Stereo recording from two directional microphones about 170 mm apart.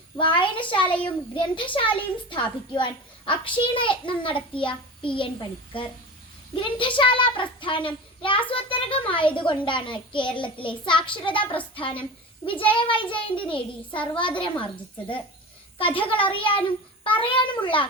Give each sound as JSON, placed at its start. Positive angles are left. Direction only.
{"t": 0.2, "sound": "a child's voice", "side_deg": 30}
{"t": 15.8, "sound": "a child's voice", "side_deg": 30}